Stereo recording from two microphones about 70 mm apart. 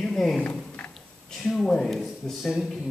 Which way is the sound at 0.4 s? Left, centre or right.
Left.